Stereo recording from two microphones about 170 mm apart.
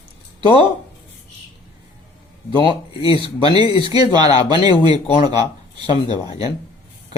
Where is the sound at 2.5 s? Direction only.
30° left (ahead or behind).